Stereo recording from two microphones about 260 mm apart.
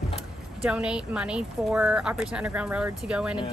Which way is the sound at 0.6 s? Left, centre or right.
Centre.